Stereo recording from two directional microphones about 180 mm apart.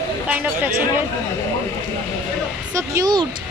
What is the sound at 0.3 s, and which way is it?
Speech, 10° right (ahead or behind).